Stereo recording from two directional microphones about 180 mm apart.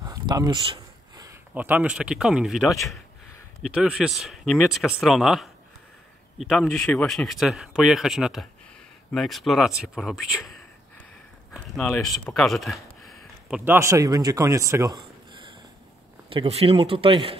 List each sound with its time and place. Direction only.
0.0 s a sound: 20° right (ahead or behind)
1.5 s speech: 10° right (ahead or behind)
13.7 s speech: 15° right (ahead or behind)